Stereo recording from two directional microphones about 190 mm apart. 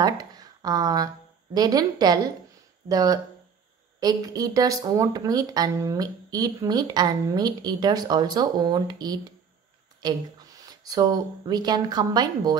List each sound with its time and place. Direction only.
0.0 s a woman's voice: 20° right (ahead or behind)
10.8 s a woman's voice: 20° right (ahead or behind)